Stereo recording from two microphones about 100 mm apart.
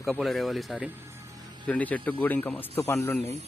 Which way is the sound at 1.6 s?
15° left (ahead or behind).